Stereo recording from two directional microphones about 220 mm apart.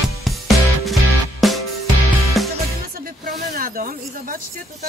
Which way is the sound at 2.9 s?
40° right (ahead or behind).